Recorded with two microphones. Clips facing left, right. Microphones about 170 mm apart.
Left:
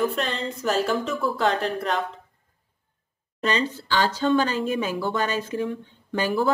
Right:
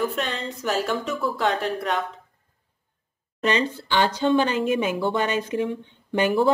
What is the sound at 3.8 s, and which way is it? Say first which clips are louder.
A woman's voice: right 1 dB; 20° right (ahead or behind).